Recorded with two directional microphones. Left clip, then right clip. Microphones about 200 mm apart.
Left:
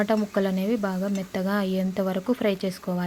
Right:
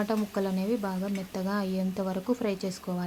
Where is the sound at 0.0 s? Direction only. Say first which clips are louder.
Left 6 dB; 15° left (ahead or behind).